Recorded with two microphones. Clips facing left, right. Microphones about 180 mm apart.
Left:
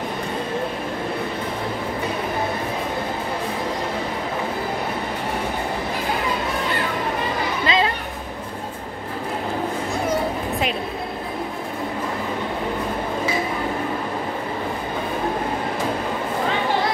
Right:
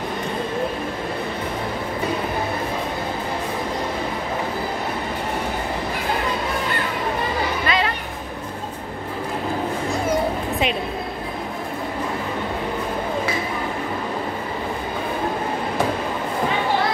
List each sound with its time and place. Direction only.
7.6 s music: 25° left (ahead or behind)